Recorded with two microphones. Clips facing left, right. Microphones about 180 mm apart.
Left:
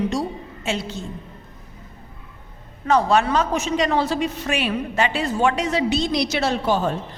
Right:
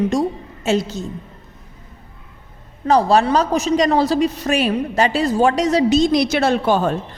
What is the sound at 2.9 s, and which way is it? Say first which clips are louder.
A woman's voice: right 4 dB; 35° right (ahead or behind).